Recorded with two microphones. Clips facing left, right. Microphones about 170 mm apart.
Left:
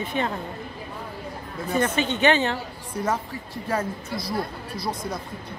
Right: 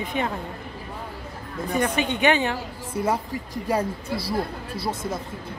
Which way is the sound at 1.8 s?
15° right (ahead or behind).